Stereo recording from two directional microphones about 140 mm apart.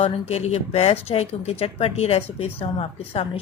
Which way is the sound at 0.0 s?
50° left (ahead or behind).